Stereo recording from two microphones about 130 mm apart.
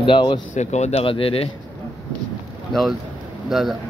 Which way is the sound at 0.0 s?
40° left (ahead or behind).